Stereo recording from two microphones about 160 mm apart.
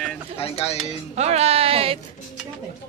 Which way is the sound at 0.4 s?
35° left (ahead or behind).